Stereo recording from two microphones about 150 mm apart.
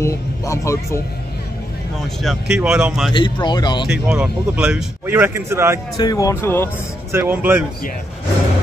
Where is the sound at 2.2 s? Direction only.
5° right (ahead or behind).